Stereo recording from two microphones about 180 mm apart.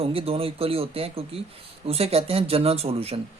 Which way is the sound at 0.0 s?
30° right (ahead or behind).